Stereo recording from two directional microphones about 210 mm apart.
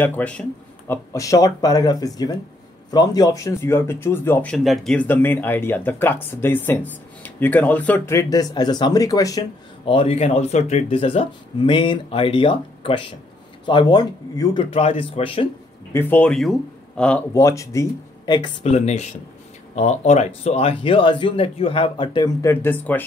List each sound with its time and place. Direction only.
0.0 s speech: 5° left (ahead or behind); by 15.4 s 25° left (ahead or behind)
15.9 s speech: 10° left (ahead or behind)